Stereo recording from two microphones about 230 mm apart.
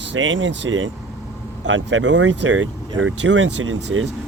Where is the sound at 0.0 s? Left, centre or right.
Right.